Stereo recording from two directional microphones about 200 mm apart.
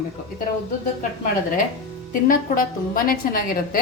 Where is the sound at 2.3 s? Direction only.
45° left (ahead or behind).